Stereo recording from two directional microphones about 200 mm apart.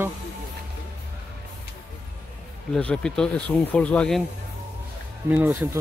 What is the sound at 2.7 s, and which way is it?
Speech, 5° left (ahead or behind).